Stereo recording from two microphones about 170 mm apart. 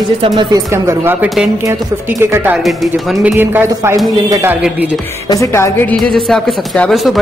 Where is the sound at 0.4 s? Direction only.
20° right (ahead or behind).